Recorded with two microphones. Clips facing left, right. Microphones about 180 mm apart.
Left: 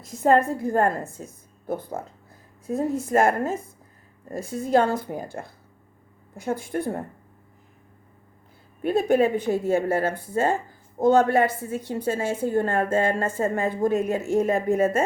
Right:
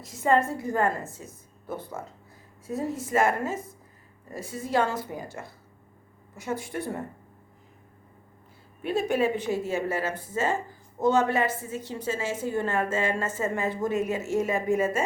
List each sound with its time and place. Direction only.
0.1 s a woman's voice: 55° left (ahead or behind); by 3.5 s 40° left (ahead or behind)
4.3 s a woman's voice: 55° left (ahead or behind)
8.8 s a woman's voice: 55° left (ahead or behind)